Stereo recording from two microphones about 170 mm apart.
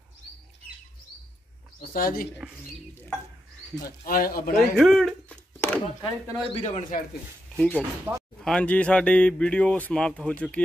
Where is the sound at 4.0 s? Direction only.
60° left (ahead or behind).